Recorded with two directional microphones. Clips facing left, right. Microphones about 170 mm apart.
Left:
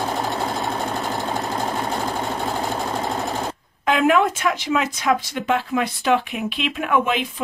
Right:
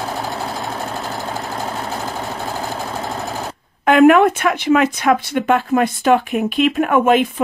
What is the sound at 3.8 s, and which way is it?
Speech, 60° right (ahead or behind).